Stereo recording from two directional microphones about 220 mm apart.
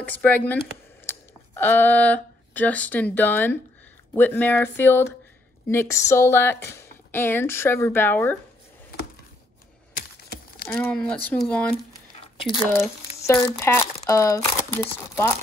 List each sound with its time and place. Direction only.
0.0 s speech: 5° left (ahead or behind)
9.9 s a sound: 45° left (ahead or behind)
10.7 s speech: 5° left (ahead or behind)
12.2 s squish: 25° left (ahead or behind)
13.3 s speech: 10° left (ahead or behind)